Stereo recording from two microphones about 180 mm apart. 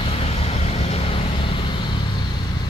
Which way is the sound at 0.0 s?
35° left (ahead or behind).